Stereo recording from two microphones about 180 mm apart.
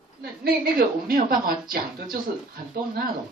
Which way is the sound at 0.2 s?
60° right (ahead or behind).